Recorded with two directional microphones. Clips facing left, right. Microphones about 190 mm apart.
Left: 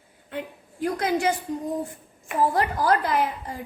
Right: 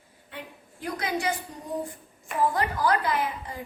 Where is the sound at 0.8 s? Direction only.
45° left (ahead or behind).